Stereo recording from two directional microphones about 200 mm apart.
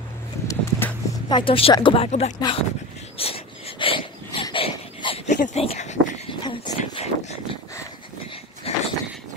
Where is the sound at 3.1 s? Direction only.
30° left (ahead or behind).